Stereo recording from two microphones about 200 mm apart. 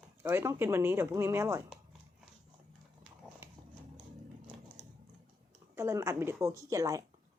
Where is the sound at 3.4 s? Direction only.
10° right (ahead or behind).